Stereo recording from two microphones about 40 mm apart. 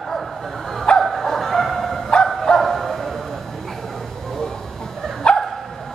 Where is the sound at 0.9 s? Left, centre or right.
Left.